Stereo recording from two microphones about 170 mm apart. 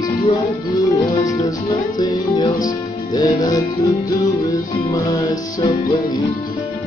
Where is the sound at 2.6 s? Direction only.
20° left (ahead or behind).